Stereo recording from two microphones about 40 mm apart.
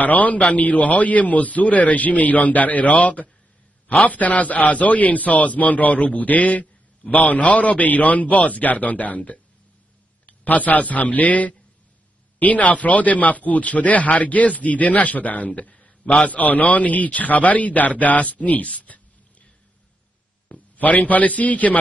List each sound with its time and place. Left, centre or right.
0.0 s a man's voice: left
10.4 s a man's voice: left
20.7 s speech: left